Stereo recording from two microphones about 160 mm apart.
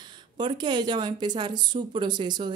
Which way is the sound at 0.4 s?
30° right (ahead or behind).